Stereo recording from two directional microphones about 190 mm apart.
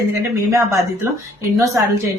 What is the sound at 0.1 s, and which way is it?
A woman's voice, 15° right (ahead or behind).